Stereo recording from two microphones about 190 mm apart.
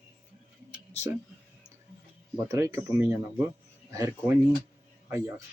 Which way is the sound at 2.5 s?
15° right (ahead or behind).